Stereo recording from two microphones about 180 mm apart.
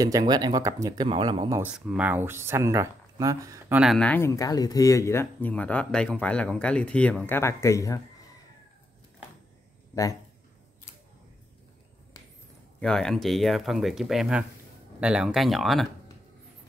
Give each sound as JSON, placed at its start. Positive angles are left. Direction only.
{"t": 0.0, "sound": "speech", "side_deg": -20}
{"t": 1.6, "sound": "speech", "side_deg": -10}
{"t": 3.8, "sound": "speech", "side_deg": 5}
{"t": 12.8, "sound": "speech", "side_deg": 5}